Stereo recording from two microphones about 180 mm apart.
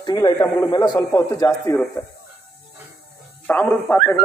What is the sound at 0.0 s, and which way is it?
A man's voice, 20° left (ahead or behind).